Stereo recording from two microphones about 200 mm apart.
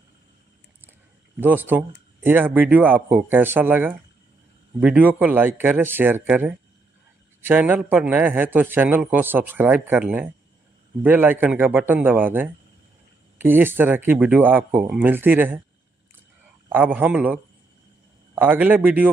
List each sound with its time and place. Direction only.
1.3 s a man's voice: 10° right (ahead or behind)
16.6 s a man's voice: 10° right (ahead or behind)